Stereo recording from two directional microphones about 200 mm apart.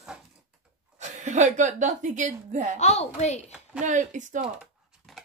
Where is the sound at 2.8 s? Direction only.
35° left (ahead or behind).